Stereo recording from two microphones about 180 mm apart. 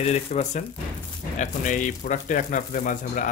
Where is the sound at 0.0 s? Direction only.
40° left (ahead or behind).